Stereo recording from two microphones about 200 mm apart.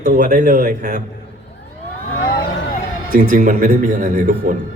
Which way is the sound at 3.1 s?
45° right (ahead or behind).